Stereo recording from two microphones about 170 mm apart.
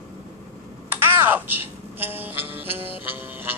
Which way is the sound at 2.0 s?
10° right (ahead or behind).